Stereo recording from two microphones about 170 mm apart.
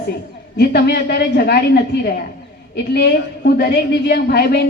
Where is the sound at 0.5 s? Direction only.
75° left (ahead or behind).